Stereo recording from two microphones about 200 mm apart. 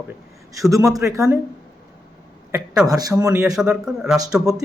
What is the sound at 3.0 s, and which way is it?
Speech, 20° right (ahead or behind).